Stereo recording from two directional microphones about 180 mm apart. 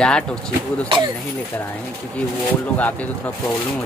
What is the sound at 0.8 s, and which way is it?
Speech, 25° right (ahead or behind).